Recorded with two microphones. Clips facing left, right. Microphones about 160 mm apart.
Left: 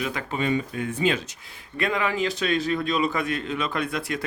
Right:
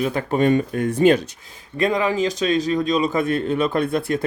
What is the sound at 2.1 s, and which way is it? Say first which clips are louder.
Speech: right 5 dB; 40° right (ahead or behind).